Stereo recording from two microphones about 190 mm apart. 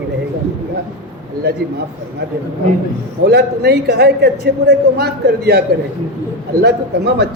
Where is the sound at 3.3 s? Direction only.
60° right (ahead or behind).